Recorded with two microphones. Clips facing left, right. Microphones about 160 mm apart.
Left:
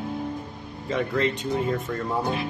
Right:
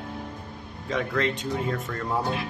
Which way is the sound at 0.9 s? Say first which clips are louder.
Left 2 dB; centre (ahead or behind).